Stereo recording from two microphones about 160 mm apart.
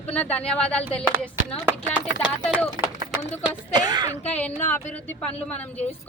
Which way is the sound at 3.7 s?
25° right (ahead or behind).